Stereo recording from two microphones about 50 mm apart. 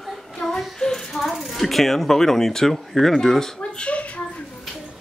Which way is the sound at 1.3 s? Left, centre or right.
Centre.